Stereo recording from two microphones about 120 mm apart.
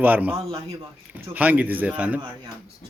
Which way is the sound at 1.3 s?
15° right (ahead or behind).